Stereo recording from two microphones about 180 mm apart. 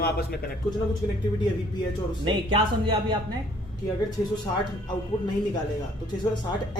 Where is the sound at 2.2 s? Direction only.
25° right (ahead or behind).